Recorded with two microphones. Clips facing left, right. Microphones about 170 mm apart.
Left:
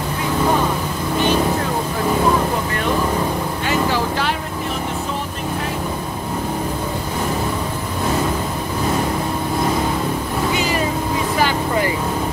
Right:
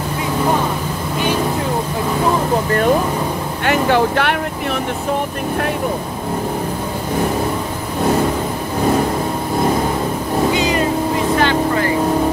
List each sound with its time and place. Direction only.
3.6 s vehicle: 65° right (ahead or behind)